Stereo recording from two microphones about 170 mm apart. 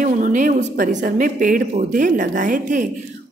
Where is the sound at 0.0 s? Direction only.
50° right (ahead or behind).